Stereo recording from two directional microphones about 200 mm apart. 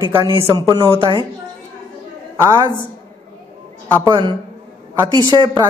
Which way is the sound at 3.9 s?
20° right (ahead or behind).